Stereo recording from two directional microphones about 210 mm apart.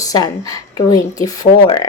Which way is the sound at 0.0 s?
15° left (ahead or behind).